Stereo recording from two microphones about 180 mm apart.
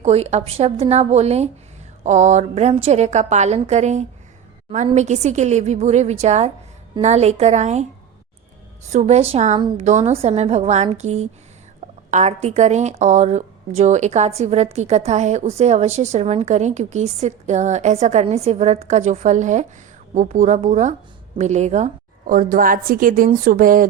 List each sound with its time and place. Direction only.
0.0 s speech: 35° right (ahead or behind)
8.9 s speech: 40° right (ahead or behind)
9.6 s a woman's voice: 25° right (ahead or behind)
9.8 s a woman's voice: 40° right (ahead or behind)